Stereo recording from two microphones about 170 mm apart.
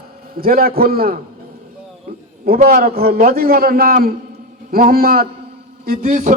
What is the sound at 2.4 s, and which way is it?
A man's voice, 60° right (ahead or behind).